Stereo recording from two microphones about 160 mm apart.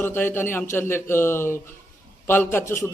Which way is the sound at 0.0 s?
15° left (ahead or behind).